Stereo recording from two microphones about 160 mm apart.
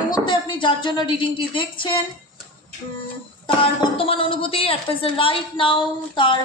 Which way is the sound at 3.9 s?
35° left (ahead or behind).